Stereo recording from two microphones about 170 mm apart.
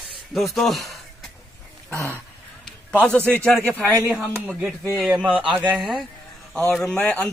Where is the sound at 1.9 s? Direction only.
15° right (ahead or behind).